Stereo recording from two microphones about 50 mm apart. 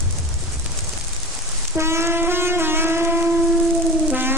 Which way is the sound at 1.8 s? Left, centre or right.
Right.